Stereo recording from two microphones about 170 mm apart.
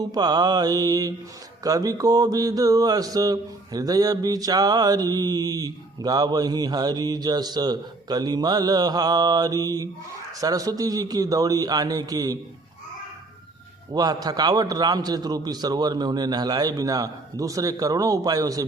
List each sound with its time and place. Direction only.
0.0 s mantra: 25° right (ahead or behind)
13.9 s mantra: 25° right (ahead or behind)